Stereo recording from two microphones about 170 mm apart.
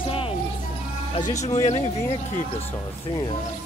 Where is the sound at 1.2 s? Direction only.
45° left (ahead or behind).